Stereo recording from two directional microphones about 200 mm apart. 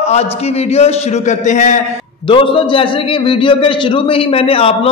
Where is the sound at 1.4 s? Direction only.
35° left (ahead or behind).